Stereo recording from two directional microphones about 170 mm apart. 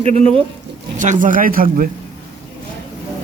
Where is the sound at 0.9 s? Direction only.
50° right (ahead or behind).